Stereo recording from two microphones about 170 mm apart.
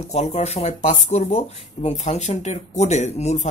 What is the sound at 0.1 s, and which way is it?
Speech, 40° left (ahead or behind).